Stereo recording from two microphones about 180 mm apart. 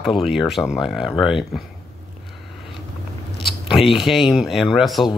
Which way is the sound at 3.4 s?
Centre (ahead or behind).